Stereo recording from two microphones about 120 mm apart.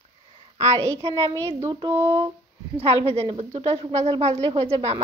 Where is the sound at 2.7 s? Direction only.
60° right (ahead or behind).